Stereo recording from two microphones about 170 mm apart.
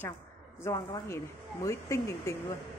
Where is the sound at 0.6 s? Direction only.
20° left (ahead or behind).